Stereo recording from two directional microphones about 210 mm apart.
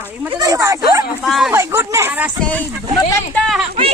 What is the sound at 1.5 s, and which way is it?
Speech, 15° right (ahead or behind).